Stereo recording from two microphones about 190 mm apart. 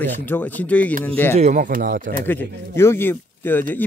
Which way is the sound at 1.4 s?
45° right (ahead or behind).